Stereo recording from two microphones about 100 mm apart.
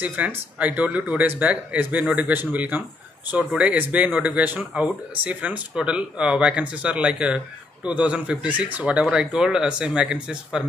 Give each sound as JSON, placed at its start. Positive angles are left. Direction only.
{"t": 0.0, "sound": "speech", "side_deg": -15}